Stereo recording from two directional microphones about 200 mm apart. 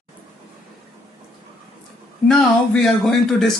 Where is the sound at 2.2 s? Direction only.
5° left (ahead or behind).